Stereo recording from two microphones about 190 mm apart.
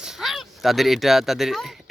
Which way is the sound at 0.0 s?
Centre (ahead or behind).